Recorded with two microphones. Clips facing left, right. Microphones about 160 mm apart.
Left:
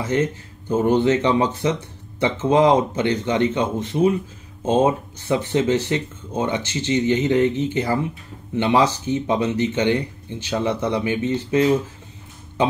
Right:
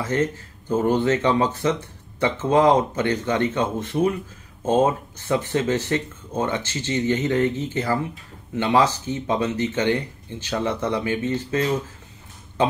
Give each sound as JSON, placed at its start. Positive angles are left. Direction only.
{"t": 0.1, "sound": "speech", "side_deg": 20}